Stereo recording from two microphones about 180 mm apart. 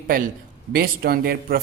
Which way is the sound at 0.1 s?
50° right (ahead or behind).